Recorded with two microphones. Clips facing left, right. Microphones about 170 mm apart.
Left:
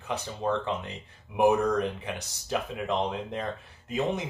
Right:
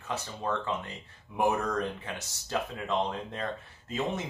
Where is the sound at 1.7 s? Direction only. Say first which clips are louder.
Left 4 dB; 15° left (ahead or behind).